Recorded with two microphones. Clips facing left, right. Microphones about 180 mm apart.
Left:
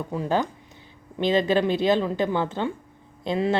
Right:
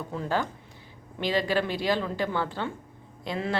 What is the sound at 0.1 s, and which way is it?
A woman's voice, 15° left (ahead or behind).